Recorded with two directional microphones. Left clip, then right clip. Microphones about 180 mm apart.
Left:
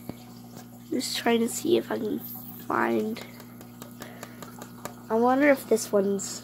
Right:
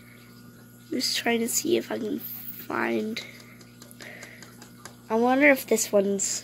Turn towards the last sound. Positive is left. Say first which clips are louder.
# right 1 dB
turn(degrees=5)  # may be behind; listen again after turning